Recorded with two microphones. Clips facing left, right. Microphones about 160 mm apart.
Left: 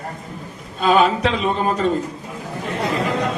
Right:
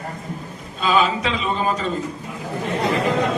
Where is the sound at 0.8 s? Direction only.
55° left (ahead or behind).